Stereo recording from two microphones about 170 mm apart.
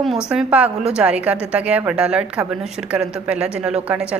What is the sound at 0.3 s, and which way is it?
A woman's voice, 5° right (ahead or behind).